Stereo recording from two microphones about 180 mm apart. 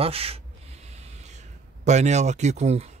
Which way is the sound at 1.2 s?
40° right (ahead or behind).